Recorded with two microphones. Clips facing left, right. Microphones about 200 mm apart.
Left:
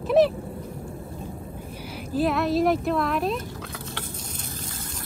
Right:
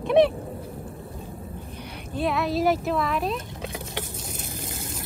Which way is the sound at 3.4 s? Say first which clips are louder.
Right 1 dB; 20° right (ahead or behind).